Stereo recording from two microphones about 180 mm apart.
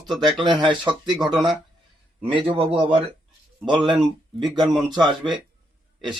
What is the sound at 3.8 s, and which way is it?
Speech, centre (ahead or behind).